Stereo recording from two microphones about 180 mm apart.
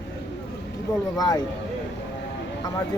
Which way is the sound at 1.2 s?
20° left (ahead or behind).